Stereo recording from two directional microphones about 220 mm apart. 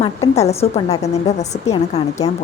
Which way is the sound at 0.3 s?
30° left (ahead or behind).